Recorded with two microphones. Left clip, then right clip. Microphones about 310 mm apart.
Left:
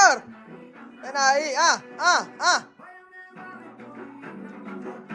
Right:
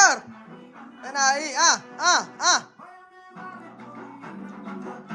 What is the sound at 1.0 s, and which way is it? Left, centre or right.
Speech, centre.